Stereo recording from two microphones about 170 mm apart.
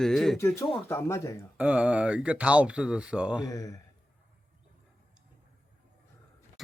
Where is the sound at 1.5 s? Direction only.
10° right (ahead or behind).